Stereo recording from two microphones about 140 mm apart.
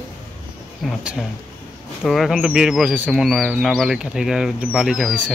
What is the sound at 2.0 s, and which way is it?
Speech, centre (ahead or behind).